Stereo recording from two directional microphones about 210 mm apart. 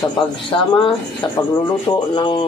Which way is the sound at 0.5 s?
20° left (ahead or behind).